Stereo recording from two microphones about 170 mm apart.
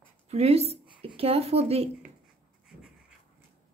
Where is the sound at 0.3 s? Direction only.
35° right (ahead or behind).